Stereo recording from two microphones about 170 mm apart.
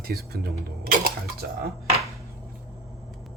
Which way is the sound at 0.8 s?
60° right (ahead or behind).